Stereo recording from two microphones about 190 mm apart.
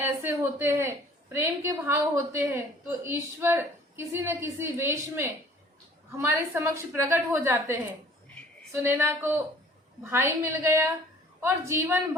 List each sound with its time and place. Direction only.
0.0 s a woman's voice: 10° right (ahead or behind)